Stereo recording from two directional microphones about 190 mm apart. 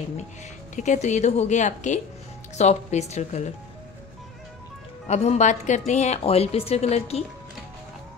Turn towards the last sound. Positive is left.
turn(degrees=35)  # may be behind; listen again after turning